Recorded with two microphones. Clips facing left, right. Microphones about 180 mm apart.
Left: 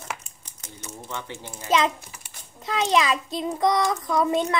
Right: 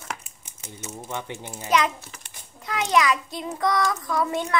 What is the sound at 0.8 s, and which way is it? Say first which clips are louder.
Speech: right 2 dB; 15° right (ahead or behind).